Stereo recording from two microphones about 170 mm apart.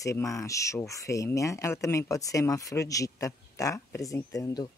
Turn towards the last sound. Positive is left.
turn(degrees=20)  # may be behind; listen again after turning